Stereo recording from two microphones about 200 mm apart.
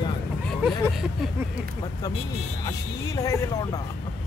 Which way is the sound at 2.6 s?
15° left (ahead or behind).